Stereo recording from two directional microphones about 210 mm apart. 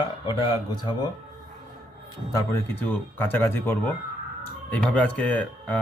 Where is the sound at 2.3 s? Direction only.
10° left (ahead or behind).